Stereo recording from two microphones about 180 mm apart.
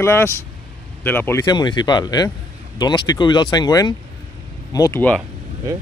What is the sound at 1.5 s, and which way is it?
Speech, 25° left (ahead or behind).